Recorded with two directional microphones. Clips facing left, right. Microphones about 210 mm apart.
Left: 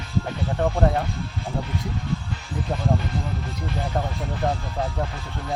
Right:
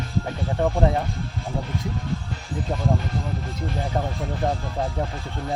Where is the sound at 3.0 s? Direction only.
45° right (ahead or behind).